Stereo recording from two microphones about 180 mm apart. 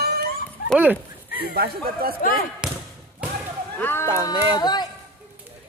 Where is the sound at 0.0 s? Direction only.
60° right (ahead or behind).